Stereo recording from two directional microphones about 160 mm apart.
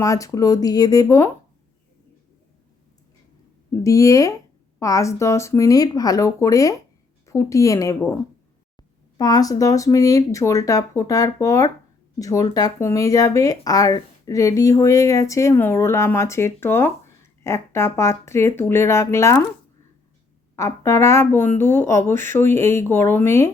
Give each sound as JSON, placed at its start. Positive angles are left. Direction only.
{"t": 0.0, "sound": "speech", "side_deg": 20}
{"t": 3.7, "sound": "speech", "side_deg": 20}
{"t": 20.6, "sound": "speech", "side_deg": 15}